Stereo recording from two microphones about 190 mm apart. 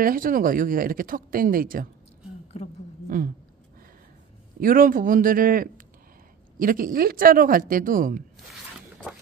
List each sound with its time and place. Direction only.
0.0 s speech: 45° right (ahead or behind)
2.5 s a woman's voice: 35° left (ahead or behind)
4.6 s speech: 45° right (ahead or behind)